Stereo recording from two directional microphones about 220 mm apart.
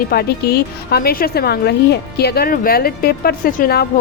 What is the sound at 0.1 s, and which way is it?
A woman's voice, 45° left (ahead or behind).